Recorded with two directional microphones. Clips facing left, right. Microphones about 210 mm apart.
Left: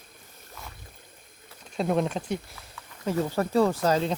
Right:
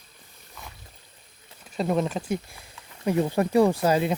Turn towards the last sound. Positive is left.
turn(degrees=-10)  # may be behind; listen again after turning